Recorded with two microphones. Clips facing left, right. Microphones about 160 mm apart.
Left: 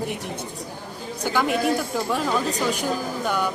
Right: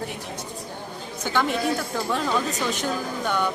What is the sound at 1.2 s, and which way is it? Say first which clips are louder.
A woman's voice: left 2 dB; 10° left (ahead or behind).